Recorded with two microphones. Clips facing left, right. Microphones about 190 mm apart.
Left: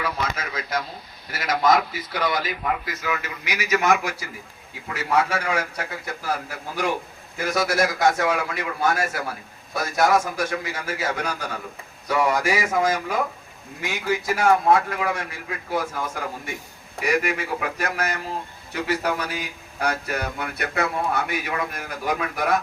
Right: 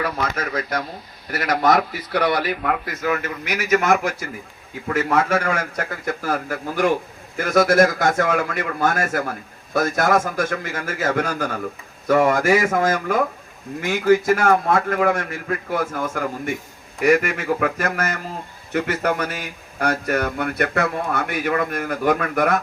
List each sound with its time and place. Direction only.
0.0 s a man's voice: 55° right (ahead or behind)